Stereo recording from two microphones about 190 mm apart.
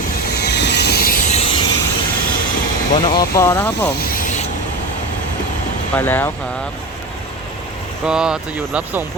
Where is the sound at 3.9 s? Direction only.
50° left (ahead or behind).